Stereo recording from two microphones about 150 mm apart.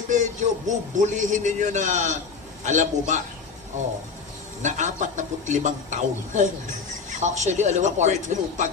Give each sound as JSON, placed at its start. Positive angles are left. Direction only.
{"t": 0.1, "sound": "a man's voice", "side_deg": -55}
{"t": 4.6, "sound": "a man's voice", "side_deg": -55}